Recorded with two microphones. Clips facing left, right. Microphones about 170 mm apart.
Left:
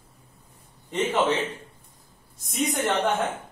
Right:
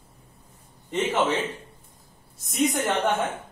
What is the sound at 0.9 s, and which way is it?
Speech, centre (ahead or behind).